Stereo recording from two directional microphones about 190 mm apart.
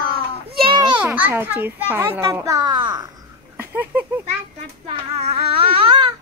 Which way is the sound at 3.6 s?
10° right (ahead or behind).